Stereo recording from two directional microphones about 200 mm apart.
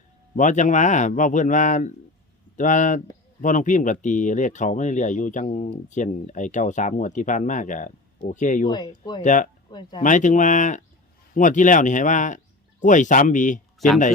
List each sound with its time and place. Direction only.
0.3 s speech: 40° left (ahead or behind)
8.7 s speech: 20° left (ahead or behind)
9.2 s speech: 40° left (ahead or behind)
13.7 s speech: centre (ahead or behind)